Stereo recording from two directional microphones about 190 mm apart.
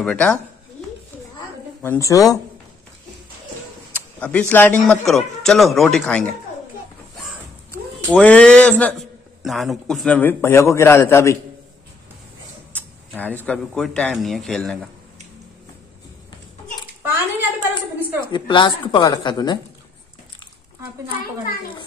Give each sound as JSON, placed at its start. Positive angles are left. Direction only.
{"t": 0.0, "sound": "speech", "side_deg": 5}
{"t": 1.8, "sound": "speech", "side_deg": 15}
{"t": 3.9, "sound": "speech", "side_deg": 5}
{"t": 7.7, "sound": "a man's voice", "side_deg": 5}
{"t": 12.7, "sound": "a sound", "side_deg": 10}
{"t": 13.5, "sound": "speech", "side_deg": 5}
{"t": 17.0, "sound": "a sound", "side_deg": -10}
{"t": 18.3, "sound": "speech", "side_deg": 25}